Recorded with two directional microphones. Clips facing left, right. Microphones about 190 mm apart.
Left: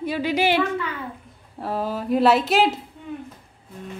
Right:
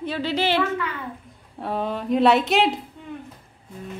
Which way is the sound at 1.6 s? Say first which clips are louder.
Even; 5° left (ahead or behind).